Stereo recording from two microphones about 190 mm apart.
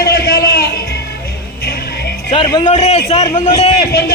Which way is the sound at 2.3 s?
25° left (ahead or behind).